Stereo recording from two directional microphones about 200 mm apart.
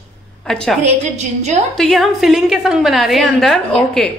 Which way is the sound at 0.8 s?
35° right (ahead or behind).